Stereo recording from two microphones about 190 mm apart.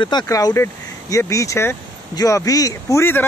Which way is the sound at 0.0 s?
20° left (ahead or behind).